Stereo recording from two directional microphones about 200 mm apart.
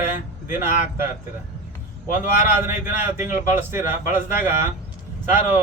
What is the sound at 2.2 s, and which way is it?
Speech, 10° right (ahead or behind).